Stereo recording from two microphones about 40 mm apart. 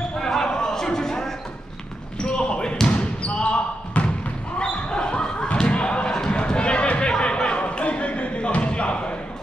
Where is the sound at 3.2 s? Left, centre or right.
Left.